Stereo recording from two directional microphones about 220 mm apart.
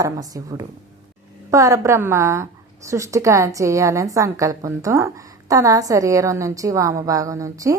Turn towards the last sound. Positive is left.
turn(degrees=-15)  # may be behind; listen again after turning